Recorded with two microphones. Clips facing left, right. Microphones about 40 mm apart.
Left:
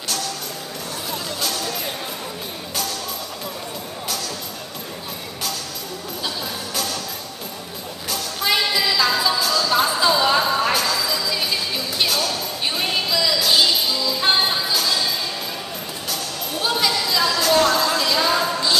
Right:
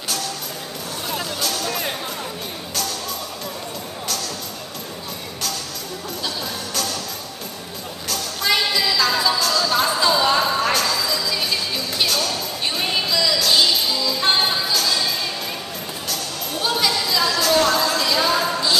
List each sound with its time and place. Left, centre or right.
1.4 s music: centre
1.7 s music: centre
6.2 s music: centre
8.1 s a sound: centre